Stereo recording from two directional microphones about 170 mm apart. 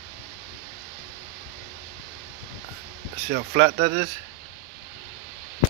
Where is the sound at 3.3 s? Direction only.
65° right (ahead or behind).